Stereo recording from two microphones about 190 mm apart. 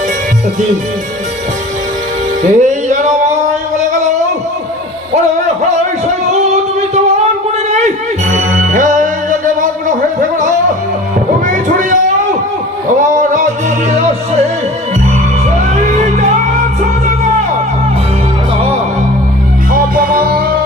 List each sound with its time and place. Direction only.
2.4 s music: 40° right (ahead or behind)
7.7 s music: 35° right (ahead or behind)
11.4 s a sound: 45° right (ahead or behind)
13.0 s a sound: 40° right (ahead or behind)
13.9 s music: 35° right (ahead or behind)
15.7 s music: 35° right (ahead or behind)
19.7 s music: 50° right (ahead or behind)